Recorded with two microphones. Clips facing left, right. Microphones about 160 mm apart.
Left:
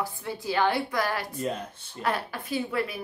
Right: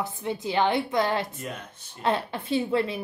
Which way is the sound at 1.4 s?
30° left (ahead or behind).